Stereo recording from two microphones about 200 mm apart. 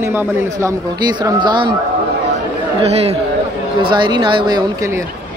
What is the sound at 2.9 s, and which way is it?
Speech, 30° right (ahead or behind).